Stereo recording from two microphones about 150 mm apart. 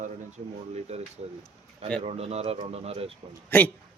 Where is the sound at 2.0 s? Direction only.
45° right (ahead or behind).